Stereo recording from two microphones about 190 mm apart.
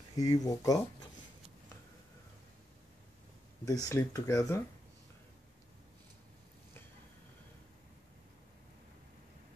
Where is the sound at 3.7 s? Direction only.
15° left (ahead or behind).